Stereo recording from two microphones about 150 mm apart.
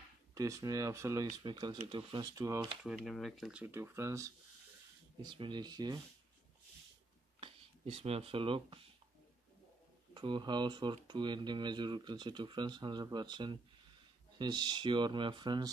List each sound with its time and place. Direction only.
0.3 s speech: 20° right (ahead or behind)
2.8 s speech: 5° right (ahead or behind)
3.6 s speech: 15° right (ahead or behind)
5.2 s speech: 30° right (ahead or behind)
7.3 s speech: 40° right (ahead or behind)
10.1 s speech: 30° right (ahead or behind)